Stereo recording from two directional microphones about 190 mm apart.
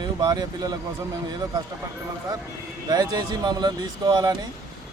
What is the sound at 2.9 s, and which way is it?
Speech, 20° right (ahead or behind).